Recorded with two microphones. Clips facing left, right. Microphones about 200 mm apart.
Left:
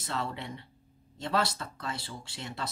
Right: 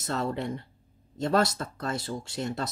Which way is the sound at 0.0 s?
45° right (ahead or behind).